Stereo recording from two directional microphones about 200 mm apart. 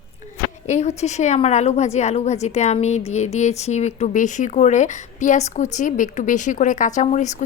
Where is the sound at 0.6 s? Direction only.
35° left (ahead or behind).